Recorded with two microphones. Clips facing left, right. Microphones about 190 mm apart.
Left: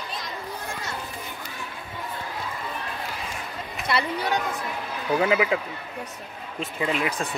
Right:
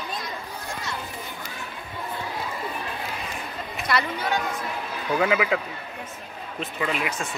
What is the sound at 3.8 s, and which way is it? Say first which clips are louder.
Speech: even; 25° left (ahead or behind).